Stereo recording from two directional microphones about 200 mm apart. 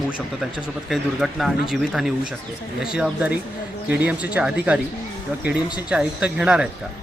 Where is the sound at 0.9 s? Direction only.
Centre (ahead or behind).